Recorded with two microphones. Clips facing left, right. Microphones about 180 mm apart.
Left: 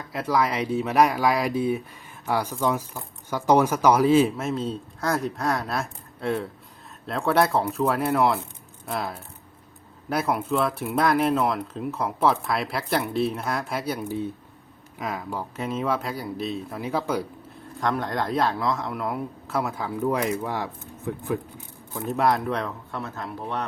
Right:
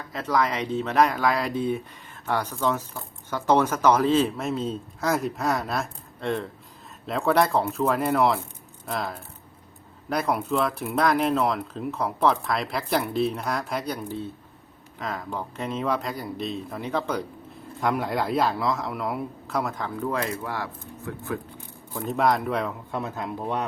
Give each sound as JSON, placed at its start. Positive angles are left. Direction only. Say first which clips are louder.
{"t": 0.1, "sound": "speech", "louder": "left 1 dB", "side_deg": 10}
{"t": 17.7, "sound": "speech", "louder": "right 1 dB", "side_deg": -5}
{"t": 22.0, "sound": "speech", "louder": "even", "side_deg": 0}
{"t": 22.9, "sound": "speech", "louder": "right 3 dB", "side_deg": -15}